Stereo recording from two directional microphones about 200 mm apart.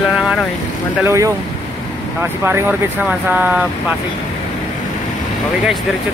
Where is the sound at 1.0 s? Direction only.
15° right (ahead or behind).